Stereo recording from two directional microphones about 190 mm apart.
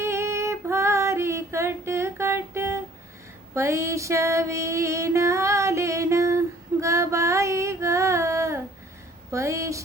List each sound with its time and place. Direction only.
0.0 s female singing: 15° right (ahead or behind)
3.5 s a sound: 15° right (ahead or behind)
9.3 s a woman's voice: 15° right (ahead or behind)